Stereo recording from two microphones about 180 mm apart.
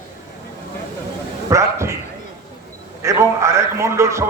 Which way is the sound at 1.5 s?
15° right (ahead or behind).